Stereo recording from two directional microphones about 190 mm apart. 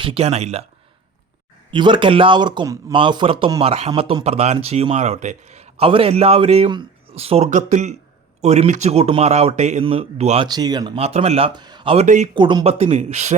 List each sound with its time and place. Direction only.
0.0 s speech: 30° right (ahead or behind)
1.7 s speech: 25° right (ahead or behind)
12.0 s speech: 40° right (ahead or behind)
12.3 s speech: 25° right (ahead or behind)